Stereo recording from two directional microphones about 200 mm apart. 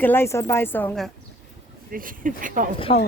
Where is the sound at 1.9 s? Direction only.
45° right (ahead or behind).